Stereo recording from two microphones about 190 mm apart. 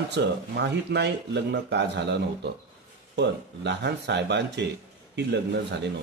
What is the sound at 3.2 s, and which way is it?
Speech, 65° right (ahead or behind).